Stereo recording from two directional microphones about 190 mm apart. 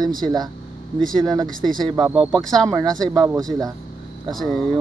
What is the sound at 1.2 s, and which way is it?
Speech, 20° right (ahead or behind).